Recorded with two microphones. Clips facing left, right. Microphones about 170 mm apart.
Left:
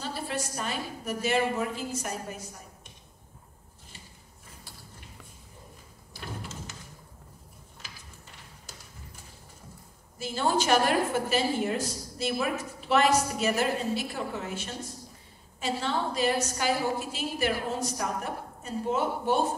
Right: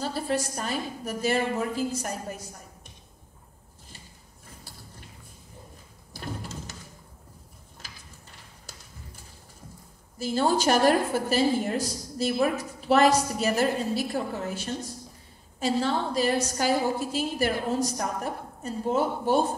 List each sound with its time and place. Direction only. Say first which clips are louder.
0.0 s a woman's voice: right 5 dB; 40° right (ahead or behind)
6.1 s music: right 3 dB; 40° right (ahead or behind)
7.8 s a sound: even; 40° right (ahead or behind)
10.1 s a woman's voice: right 3 dB; 40° right (ahead or behind)